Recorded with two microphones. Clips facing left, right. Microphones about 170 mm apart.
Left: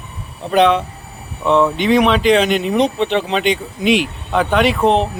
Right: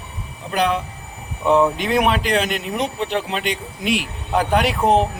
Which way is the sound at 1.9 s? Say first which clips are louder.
Left 6 dB; 90° left.